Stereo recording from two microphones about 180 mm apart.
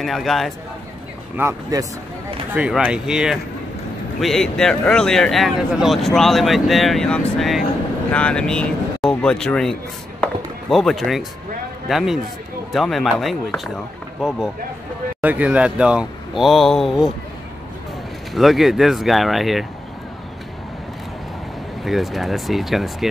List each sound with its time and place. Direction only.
0.0 s speech: centre (ahead or behind)
1.3 s speech: 15° right (ahead or behind)
2.5 s speech: 5° right (ahead or behind)
10.2 s chopping: centre (ahead or behind)
11.9 s speech: centre (ahead or behind)
15.2 s speech: 10° right (ahead or behind)
18.3 s speech: centre (ahead or behind)
21.8 s speech: centre (ahead or behind)